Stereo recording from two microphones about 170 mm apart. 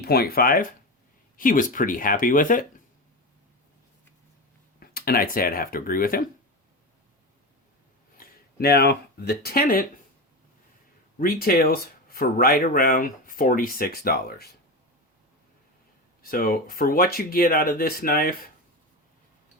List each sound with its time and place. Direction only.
0.0 s speech: 70° left (ahead or behind); by 2.6 s 50° left (ahead or behind)
4.8 s speech: 60° left (ahead or behind)
8.2 s speech: 65° left (ahead or behind)
11.2 s speech: 60° left (ahead or behind)
16.2 s speech: 60° left (ahead or behind)